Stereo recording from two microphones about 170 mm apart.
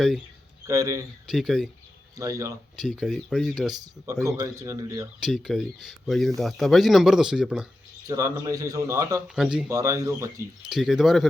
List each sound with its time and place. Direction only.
0.7 s speech: 20° right (ahead or behind)
1.3 s speech: centre (ahead or behind)
2.1 s speech: 20° right (ahead or behind)
2.7 s speech: centre (ahead or behind)
3.7 s speech: 20° right (ahead or behind)
5.2 s speech: centre (ahead or behind)
8.0 s speech: 20° right (ahead or behind)
9.2 s speech: 5° right (ahead or behind)
9.6 s speech: 20° right (ahead or behind)
10.7 s speech: centre (ahead or behind)